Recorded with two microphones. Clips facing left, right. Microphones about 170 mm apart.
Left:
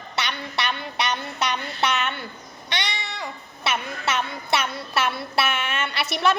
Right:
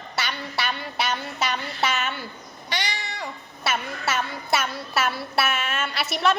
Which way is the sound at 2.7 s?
65° left (ahead or behind).